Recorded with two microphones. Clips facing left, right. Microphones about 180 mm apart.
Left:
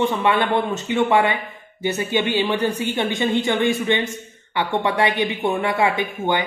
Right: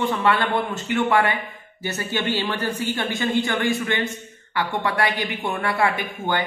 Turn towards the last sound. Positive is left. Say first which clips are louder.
# left 3 dB
turn(degrees=15)  # may be behind; listen again after turning